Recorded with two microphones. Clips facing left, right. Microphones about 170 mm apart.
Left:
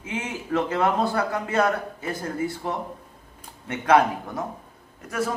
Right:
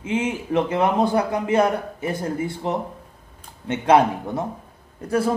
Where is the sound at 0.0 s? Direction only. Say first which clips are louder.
Right 7 dB; 25° right (ahead or behind).